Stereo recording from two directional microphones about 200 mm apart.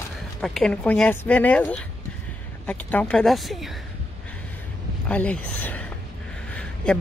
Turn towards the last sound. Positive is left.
turn(degrees=5)  # may be behind; listen again after turning